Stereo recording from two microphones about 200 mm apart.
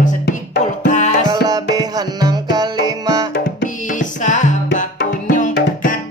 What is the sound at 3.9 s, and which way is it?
Music, 40° left (ahead or behind).